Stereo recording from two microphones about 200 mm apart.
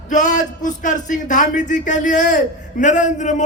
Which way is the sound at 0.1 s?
40° left (ahead or behind).